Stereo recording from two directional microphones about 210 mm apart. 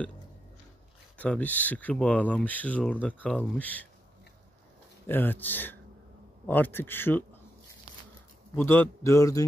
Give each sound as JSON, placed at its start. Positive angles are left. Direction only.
{"t": 1.1, "sound": "speech", "side_deg": 5}
{"t": 5.0, "sound": "speech", "side_deg": 10}
{"t": 8.5, "sound": "speech", "side_deg": 10}